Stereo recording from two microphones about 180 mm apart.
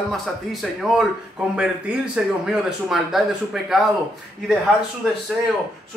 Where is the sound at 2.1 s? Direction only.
5° right (ahead or behind).